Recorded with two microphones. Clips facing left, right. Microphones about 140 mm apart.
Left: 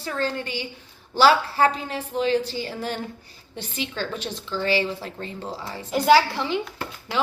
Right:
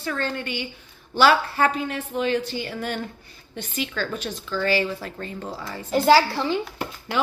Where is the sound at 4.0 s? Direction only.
45° right (ahead or behind).